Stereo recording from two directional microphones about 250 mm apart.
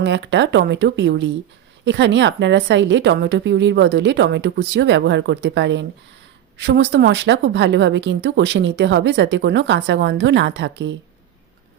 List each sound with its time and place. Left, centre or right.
0.0 s speech: right